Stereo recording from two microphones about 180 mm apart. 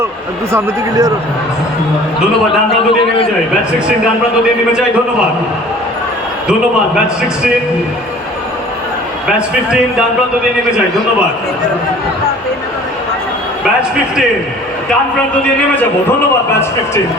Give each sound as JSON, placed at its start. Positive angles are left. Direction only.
{"t": 0.5, "sound": "speech", "side_deg": -20}